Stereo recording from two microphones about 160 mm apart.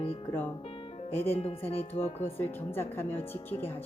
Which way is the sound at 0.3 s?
10° left (ahead or behind).